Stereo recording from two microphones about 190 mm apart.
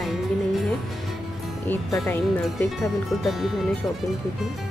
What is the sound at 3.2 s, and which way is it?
Speech, centre (ahead or behind).